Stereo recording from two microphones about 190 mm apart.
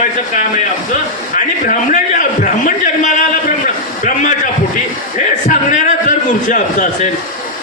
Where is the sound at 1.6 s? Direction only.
45° left (ahead or behind).